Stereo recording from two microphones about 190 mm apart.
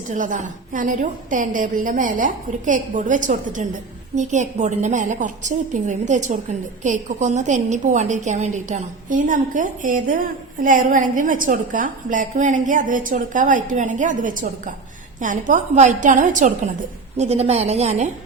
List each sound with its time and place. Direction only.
0.1 s a woman's voice: 40° right (ahead or behind)